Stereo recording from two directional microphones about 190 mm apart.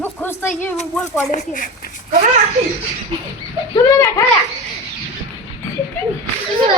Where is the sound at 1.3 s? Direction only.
45° left (ahead or behind).